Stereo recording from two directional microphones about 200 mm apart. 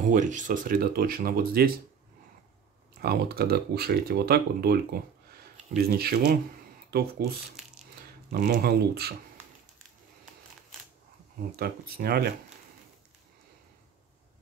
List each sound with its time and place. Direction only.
0.0 s speech: 40° right (ahead or behind)
3.0 s speech: 50° right (ahead or behind)
5.8 s speech: 50° right (ahead or behind)
11.5 s speech: 50° right (ahead or behind)